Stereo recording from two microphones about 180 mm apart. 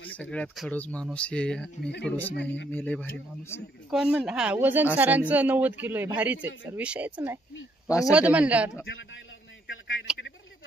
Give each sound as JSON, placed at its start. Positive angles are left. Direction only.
{"t": 0.0, "sound": "speech", "side_deg": 10}
{"t": 3.9, "sound": "speech", "side_deg": -5}
{"t": 8.8, "sound": "a man's voice", "side_deg": 90}